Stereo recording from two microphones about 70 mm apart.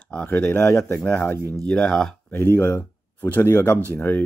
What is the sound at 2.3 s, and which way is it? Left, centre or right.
Speech, left.